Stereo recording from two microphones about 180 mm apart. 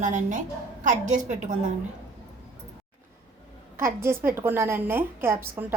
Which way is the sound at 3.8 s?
15° right (ahead or behind).